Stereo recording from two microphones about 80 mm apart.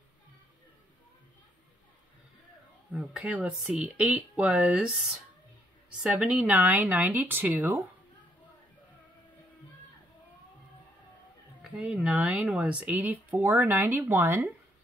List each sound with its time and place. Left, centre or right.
2.9 s speech: centre
3.2 s a woman's voice: centre
5.9 s a woman's voice: centre
11.7 s a woman's voice: centre; by 14.4 s right